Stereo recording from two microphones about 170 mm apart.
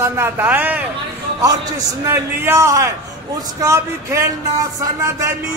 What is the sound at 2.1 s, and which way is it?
A man's voice, 15° right (ahead or behind).